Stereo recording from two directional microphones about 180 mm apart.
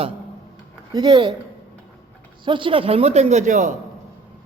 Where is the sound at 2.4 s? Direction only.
25° right (ahead or behind); by 3.7 s 45° right (ahead or behind).